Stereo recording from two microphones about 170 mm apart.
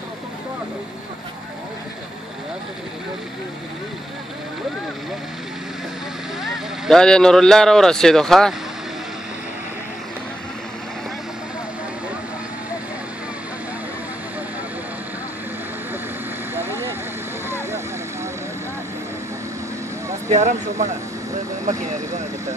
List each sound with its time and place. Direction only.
6.4 s speech: centre (ahead or behind)
16.5 s vehicle: 15° right (ahead or behind)
20.2 s speech: 45° right (ahead or behind)